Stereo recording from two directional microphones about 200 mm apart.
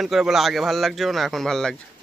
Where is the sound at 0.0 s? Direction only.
Centre (ahead or behind).